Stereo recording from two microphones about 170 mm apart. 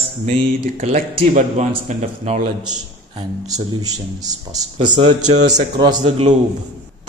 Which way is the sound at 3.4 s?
20° right (ahead or behind).